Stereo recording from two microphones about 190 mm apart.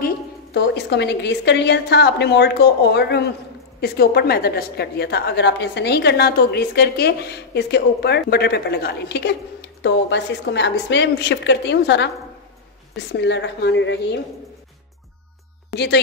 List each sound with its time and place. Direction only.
0.0 s a woman's voice: 60° left (ahead or behind)
15.7 s a woman's voice: 60° left (ahead or behind)